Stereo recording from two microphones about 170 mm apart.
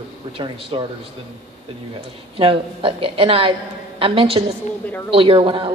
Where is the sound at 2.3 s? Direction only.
35° right (ahead or behind).